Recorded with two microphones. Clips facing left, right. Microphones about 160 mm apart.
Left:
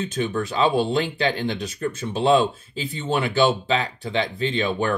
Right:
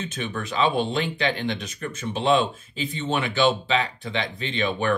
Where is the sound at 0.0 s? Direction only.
35° left (ahead or behind).